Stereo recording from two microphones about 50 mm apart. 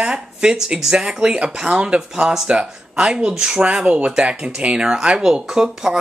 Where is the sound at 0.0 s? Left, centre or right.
Centre.